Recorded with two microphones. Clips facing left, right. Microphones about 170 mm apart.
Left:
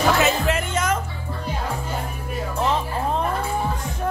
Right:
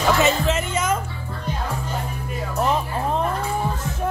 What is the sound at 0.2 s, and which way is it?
Music, centre (ahead or behind).